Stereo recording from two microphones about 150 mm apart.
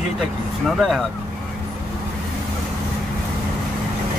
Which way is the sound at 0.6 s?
Centre (ahead or behind).